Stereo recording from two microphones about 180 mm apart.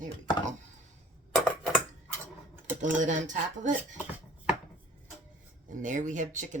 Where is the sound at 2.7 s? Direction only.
45° right (ahead or behind).